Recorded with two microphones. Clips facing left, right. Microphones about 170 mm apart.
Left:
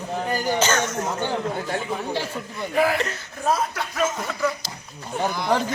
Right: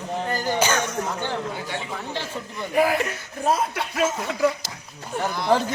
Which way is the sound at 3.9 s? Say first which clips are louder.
Right 1 dB; 30° right (ahead or behind).